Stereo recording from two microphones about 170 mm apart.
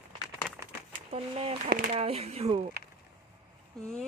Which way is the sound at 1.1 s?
35° right (ahead or behind).